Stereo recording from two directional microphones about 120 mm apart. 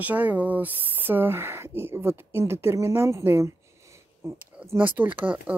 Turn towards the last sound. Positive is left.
turn(degrees=-15)  # may be behind; listen again after turning